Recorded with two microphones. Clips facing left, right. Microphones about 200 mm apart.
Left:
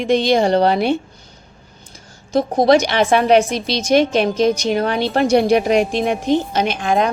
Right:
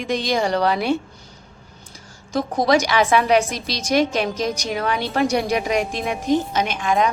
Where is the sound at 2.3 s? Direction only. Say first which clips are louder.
Left 5 dB; 25° left (ahead or behind).